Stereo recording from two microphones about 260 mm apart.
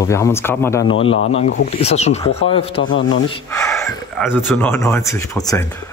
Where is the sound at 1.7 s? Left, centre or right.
Left.